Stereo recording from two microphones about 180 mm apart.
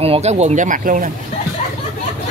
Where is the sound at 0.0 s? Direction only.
35° right (ahead or behind).